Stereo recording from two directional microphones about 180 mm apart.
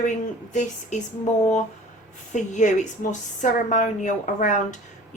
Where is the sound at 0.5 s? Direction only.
45° left (ahead or behind).